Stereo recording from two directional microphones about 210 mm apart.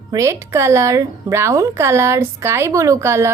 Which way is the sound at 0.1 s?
15° right (ahead or behind).